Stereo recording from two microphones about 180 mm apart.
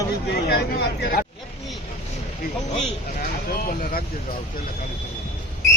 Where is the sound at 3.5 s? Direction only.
55° left (ahead or behind).